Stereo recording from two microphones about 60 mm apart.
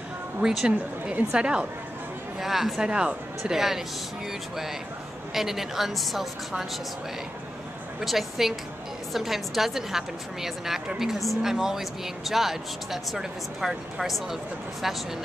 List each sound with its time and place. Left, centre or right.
0.4 s speech: centre
5.3 s a woman's voice: centre
8.0 s a woman's voice: centre